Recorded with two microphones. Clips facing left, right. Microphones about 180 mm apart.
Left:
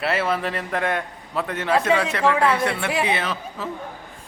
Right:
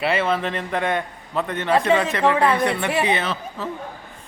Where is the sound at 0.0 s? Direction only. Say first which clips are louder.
Right 2 dB; 5° left (ahead or behind).